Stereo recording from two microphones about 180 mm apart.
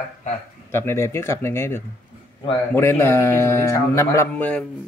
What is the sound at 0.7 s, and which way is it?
A man's voice, 15° left (ahead or behind).